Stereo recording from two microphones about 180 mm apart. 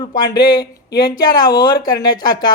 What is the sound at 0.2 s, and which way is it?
Speech, 20° left (ahead or behind).